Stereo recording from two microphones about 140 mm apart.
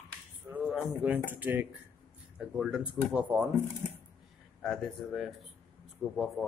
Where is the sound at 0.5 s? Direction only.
5° right (ahead or behind).